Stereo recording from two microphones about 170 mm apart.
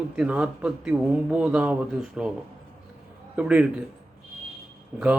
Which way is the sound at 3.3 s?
5° right (ahead or behind).